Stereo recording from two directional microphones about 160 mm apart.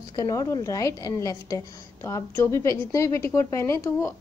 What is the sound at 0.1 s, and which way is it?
A woman's voice, 20° left (ahead or behind).